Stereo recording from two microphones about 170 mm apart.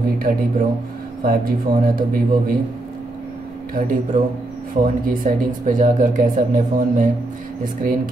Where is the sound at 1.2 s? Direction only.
55° right (ahead or behind).